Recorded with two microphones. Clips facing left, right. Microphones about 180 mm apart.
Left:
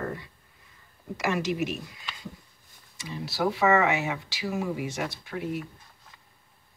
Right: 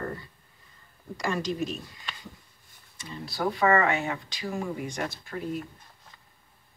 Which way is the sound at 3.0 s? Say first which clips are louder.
Left 2 dB; 5° left (ahead or behind).